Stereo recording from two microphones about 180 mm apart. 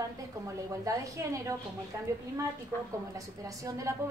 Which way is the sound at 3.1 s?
20° right (ahead or behind).